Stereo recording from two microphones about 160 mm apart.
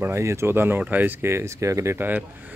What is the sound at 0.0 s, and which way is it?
Speech, 15° right (ahead or behind).